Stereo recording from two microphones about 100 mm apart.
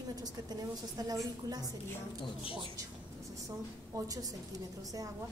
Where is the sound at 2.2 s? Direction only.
65° left (ahead or behind).